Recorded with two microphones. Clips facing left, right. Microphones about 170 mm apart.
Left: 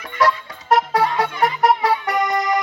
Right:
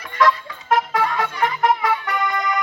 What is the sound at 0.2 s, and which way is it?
Music, 40° left (ahead or behind).